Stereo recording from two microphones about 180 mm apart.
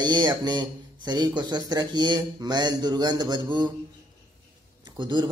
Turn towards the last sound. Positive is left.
turn(degrees=-25)  # may be behind; listen again after turning